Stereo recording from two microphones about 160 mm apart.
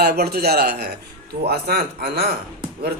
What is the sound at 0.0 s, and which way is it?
Speech, 80° right.